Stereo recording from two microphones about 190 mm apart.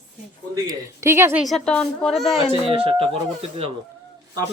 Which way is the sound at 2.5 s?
30° right (ahead or behind).